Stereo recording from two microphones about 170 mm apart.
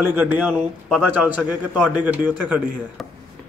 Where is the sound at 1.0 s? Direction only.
10° right (ahead or behind).